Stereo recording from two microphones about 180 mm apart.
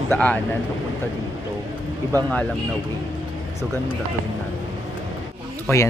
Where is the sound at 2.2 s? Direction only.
5° left (ahead or behind).